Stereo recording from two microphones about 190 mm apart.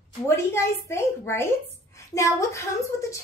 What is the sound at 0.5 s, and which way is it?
A woman's voice, 15° left (ahead or behind).